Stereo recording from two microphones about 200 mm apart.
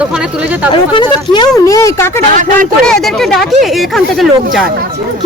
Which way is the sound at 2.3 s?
40° right (ahead or behind).